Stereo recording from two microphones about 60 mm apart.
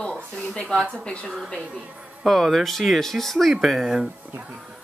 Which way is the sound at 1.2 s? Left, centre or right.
Centre.